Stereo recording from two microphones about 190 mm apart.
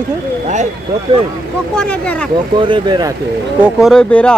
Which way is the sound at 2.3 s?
25° right (ahead or behind).